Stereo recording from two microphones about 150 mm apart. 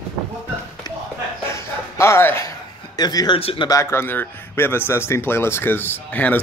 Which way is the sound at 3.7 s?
20° left (ahead or behind).